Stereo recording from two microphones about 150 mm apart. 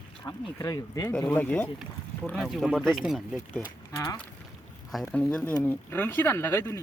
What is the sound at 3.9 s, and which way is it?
Speech, 20° left (ahead or behind).